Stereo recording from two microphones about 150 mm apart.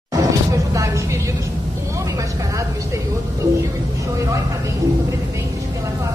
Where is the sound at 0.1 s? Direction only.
20° right (ahead or behind).